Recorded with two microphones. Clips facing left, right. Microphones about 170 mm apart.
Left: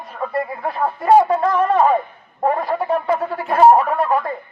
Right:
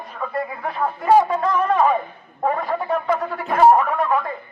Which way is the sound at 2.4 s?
35° left (ahead or behind).